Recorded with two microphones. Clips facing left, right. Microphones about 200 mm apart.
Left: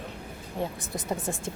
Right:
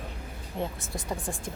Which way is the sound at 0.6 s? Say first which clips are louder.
Left 1 dB; 20° left (ahead or behind).